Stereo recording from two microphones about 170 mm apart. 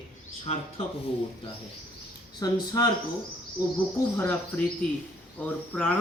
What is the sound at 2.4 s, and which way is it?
Speech, 20° left (ahead or behind).